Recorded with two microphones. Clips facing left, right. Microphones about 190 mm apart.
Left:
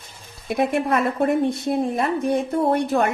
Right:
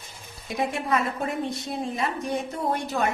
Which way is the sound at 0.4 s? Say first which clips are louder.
Left 7 dB; 60° left (ahead or behind).